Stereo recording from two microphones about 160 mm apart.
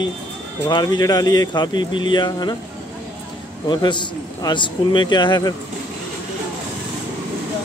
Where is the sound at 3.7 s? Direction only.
30° left (ahead or behind).